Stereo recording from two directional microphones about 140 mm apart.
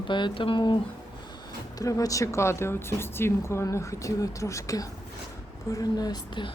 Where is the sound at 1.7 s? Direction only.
25° left (ahead or behind).